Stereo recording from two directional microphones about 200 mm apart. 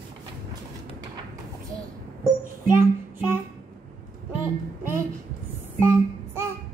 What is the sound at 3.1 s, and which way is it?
Music, 10° right (ahead or behind).